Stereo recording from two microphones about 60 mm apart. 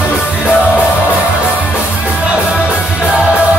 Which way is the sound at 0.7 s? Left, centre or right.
Right.